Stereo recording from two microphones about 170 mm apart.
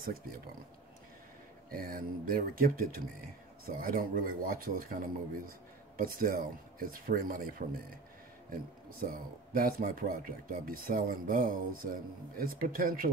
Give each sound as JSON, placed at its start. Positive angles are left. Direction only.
{"t": 0.0, "sound": "speech", "side_deg": -60}
{"t": 1.7, "sound": "speech", "side_deg": -55}
{"t": 9.0, "sound": "speech", "side_deg": -55}